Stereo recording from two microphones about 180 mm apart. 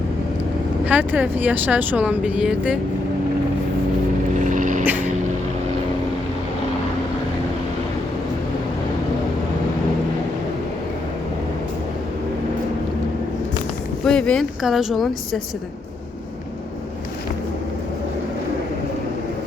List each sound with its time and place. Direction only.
0.9 s speech: 10° right (ahead or behind)
4.4 s vehicle: 45° right (ahead or behind)
14.0 s speech: 5° left (ahead or behind)